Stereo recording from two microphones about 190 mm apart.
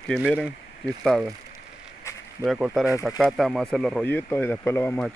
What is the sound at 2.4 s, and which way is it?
Speech, centre (ahead or behind).